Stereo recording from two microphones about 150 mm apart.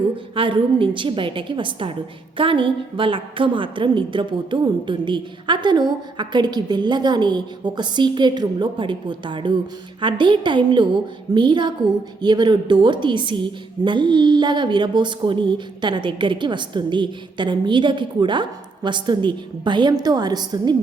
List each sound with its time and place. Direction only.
0.3 s a woman's voice: 35° right (ahead or behind)